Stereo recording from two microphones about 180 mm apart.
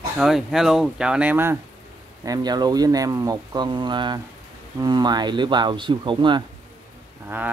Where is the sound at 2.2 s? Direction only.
20° right (ahead or behind).